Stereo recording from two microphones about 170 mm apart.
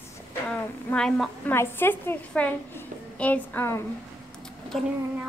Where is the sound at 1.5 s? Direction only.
15° left (ahead or behind).